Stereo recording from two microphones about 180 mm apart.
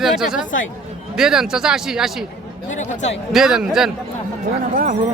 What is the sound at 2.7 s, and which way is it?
Speech, 40° left (ahead or behind).